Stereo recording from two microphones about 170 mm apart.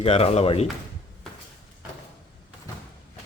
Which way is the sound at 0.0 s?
35° left (ahead or behind).